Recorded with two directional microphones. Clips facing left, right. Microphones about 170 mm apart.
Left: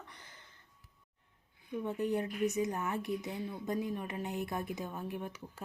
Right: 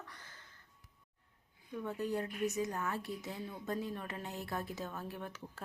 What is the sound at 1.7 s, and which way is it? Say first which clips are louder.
Speech: left 4 dB; 20° left (ahead or behind).